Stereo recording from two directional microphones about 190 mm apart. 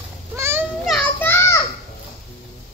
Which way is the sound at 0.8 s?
5° left (ahead or behind).